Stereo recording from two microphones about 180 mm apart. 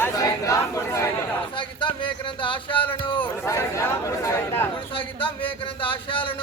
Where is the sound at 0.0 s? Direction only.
20° left (ahead or behind).